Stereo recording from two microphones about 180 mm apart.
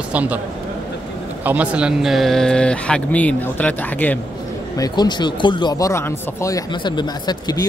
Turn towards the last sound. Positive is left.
turn(degrees=20)  # may be behind; listen again after turning